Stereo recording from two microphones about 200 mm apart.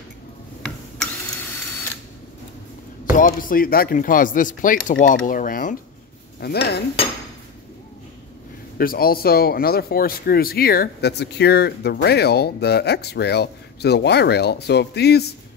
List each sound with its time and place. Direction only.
3.1 s speech: 45° left (ahead or behind)
6.4 s speech: 55° left (ahead or behind)
8.7 s speech: 50° left (ahead or behind)